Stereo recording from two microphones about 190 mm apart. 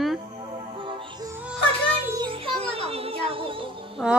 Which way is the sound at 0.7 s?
25° right (ahead or behind).